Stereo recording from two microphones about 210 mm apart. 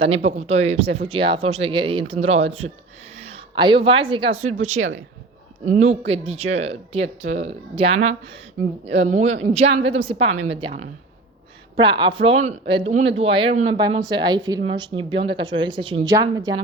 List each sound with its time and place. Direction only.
0.0 s speech: 30° right (ahead or behind)
11.8 s speech: 20° right (ahead or behind)